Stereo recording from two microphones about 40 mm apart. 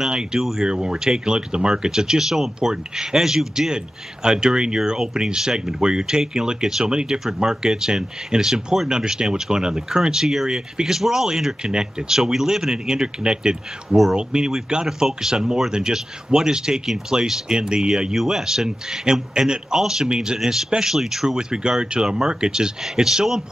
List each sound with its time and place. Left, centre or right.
0.0 s speech: centre